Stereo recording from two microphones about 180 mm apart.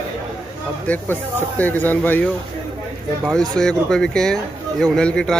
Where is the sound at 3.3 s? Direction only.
5° left (ahead or behind).